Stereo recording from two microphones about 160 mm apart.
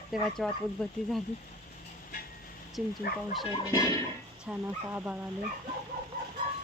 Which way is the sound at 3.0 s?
90° left.